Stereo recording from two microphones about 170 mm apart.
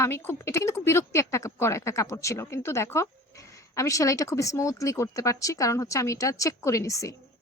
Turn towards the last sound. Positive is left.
turn(degrees=20)  # may be behind; listen again after turning